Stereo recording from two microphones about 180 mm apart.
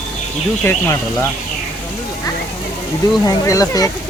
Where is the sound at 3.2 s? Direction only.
20° left (ahead or behind).